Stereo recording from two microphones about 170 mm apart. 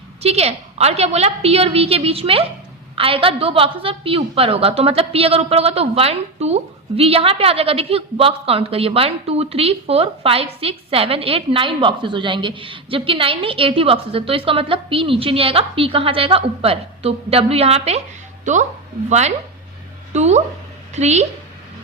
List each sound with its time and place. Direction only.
0.2 s a woman's voice: 40° right (ahead or behind)